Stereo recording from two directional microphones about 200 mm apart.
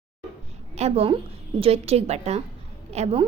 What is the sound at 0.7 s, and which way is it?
A woman's voice, 30° right (ahead or behind).